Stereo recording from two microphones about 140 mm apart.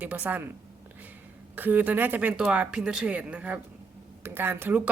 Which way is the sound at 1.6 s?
15° right (ahead or behind).